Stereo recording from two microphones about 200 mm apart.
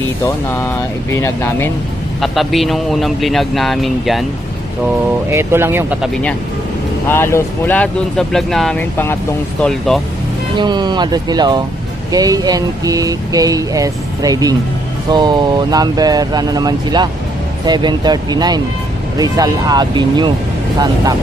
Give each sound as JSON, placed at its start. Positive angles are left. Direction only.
{"t": 1.1, "sound": "speech", "side_deg": 10}
{"t": 2.2, "sound": "speech", "side_deg": 0}
{"t": 5.3, "sound": "speech", "side_deg": -10}
{"t": 7.1, "sound": "speech", "side_deg": 10}
{"t": 10.6, "sound": "speech", "side_deg": -20}